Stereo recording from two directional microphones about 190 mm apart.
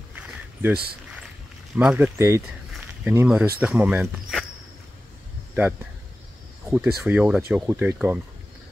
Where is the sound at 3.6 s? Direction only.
5° right (ahead or behind).